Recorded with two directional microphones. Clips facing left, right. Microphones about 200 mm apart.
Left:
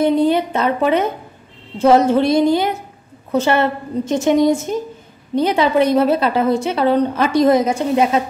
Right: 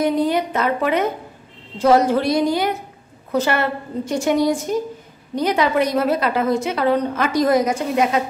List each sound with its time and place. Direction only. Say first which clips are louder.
0.0 s a woman's voice: left 4 dB; 30° left (ahead or behind)